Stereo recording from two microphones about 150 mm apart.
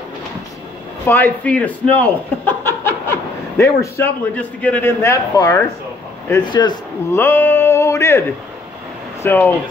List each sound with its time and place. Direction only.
1.0 s a man's voice: 10° left (ahead or behind); by 6.8 s 30° left (ahead or behind)
7.1 s a sound: 15° left (ahead or behind)
9.2 s speech: 15° left (ahead or behind)